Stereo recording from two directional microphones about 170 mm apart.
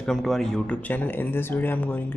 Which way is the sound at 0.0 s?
Centre (ahead or behind).